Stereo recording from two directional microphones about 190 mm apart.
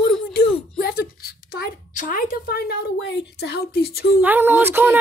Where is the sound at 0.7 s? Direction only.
50° left (ahead or behind).